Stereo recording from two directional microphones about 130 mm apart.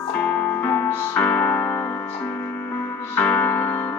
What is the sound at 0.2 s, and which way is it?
Music, 10° left (ahead or behind).